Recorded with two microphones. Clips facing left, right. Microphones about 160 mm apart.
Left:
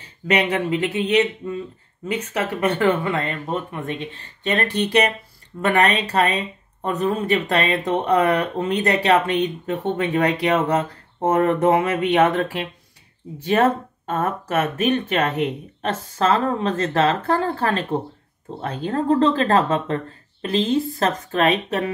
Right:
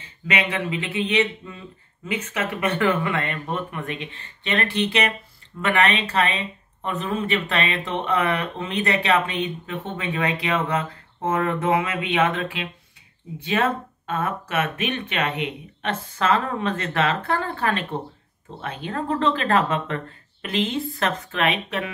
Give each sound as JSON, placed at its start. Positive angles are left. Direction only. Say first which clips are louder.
{"t": 0.3, "sound": "speech", "louder": "left 5 dB", "side_deg": 40}
{"t": 1.4, "sound": "speech", "louder": "left 11 dB", "side_deg": 25}